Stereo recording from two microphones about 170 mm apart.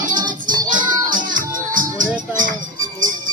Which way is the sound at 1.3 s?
50° right (ahead or behind).